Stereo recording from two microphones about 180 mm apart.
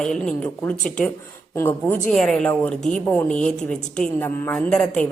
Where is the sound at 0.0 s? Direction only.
5° left (ahead or behind).